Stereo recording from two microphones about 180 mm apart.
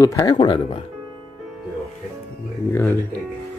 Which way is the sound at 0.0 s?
20° left (ahead or behind).